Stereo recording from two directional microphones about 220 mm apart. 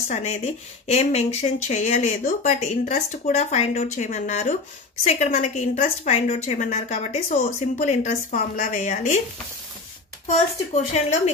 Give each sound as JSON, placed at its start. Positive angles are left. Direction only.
{"t": 0.1, "sound": "a woman's voice", "side_deg": 30}
{"t": 10.2, "sound": "a woman's voice", "side_deg": 30}